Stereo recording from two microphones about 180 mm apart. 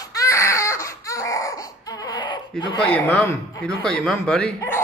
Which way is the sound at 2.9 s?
10° left (ahead or behind).